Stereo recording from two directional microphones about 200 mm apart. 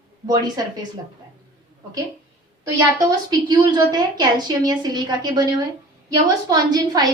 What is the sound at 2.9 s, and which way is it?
A woman's voice, 20° right (ahead or behind).